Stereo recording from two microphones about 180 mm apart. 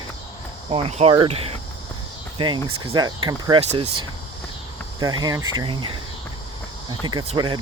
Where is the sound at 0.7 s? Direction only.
35° right (ahead or behind).